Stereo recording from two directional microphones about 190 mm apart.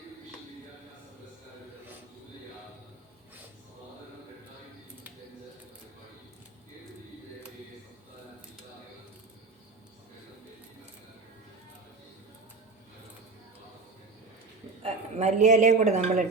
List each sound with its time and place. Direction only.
14.8 s speech: 40° right (ahead or behind)